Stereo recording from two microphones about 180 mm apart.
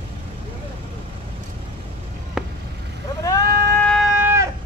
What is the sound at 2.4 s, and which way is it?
Vehicle, centre (ahead or behind).